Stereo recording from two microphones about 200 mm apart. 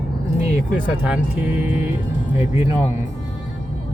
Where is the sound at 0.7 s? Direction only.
5° right (ahead or behind).